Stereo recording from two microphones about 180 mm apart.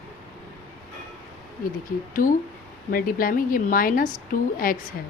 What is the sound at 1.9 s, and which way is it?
A woman's voice, 50° left (ahead or behind).